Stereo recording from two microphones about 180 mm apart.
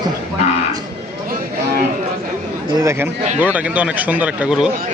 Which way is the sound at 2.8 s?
15° right (ahead or behind).